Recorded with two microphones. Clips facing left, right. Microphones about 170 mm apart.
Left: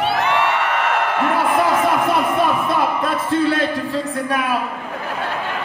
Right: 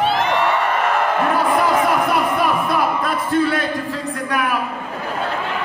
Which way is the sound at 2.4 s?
25° left (ahead or behind).